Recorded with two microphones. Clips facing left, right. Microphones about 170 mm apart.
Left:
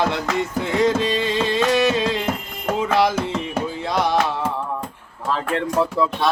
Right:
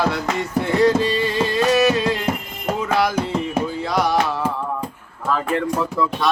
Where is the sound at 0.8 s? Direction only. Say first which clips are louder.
Right 2 dB; 20° left (ahead or behind).